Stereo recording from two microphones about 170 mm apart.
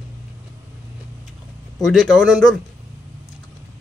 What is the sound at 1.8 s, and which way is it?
Speech, centre (ahead or behind).